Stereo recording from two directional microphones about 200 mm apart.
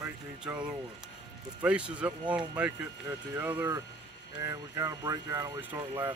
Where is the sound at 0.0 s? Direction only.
5° right (ahead or behind).